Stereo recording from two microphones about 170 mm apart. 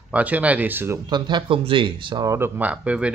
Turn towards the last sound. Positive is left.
turn(degrees=-5)  # may be behind; listen again after turning